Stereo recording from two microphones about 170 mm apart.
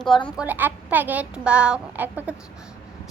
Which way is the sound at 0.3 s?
10° right (ahead or behind).